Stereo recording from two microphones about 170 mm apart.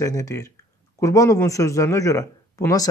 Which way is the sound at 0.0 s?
20° left (ahead or behind).